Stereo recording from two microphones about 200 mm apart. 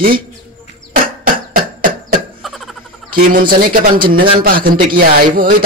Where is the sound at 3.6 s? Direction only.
45° right (ahead or behind).